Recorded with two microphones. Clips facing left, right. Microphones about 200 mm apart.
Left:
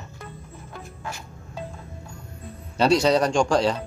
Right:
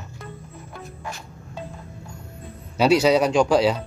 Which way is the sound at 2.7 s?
5° right (ahead or behind).